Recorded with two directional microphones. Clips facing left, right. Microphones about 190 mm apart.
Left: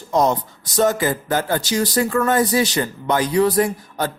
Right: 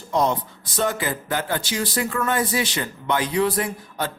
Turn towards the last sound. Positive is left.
turn(degrees=40)  # may be behind; listen again after turning